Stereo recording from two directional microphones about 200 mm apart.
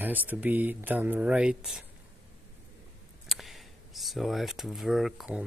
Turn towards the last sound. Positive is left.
turn(degrees=0)  # may be behind; listen again after turning